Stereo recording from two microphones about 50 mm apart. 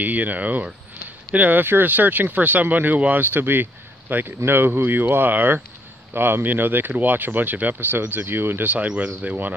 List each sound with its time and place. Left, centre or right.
0.0 s speech: right
4.5 s speech: right
8.6 s speech: right